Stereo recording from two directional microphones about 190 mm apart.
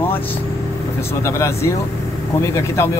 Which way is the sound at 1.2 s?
15° left (ahead or behind).